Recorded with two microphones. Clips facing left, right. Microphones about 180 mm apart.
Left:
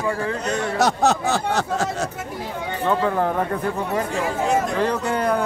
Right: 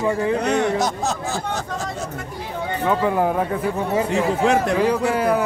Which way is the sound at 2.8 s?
10° right (ahead or behind).